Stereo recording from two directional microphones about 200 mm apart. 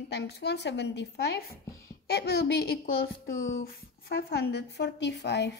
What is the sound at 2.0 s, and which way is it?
A woman's voice, 55° left (ahead or behind).